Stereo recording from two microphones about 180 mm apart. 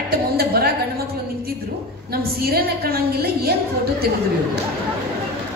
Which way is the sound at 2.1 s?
60° right (ahead or behind).